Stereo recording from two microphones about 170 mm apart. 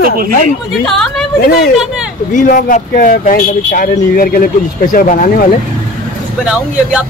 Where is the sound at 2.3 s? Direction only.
50° left (ahead or behind).